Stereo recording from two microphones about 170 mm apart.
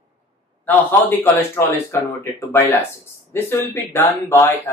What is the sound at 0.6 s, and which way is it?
Speech, 10° left (ahead or behind).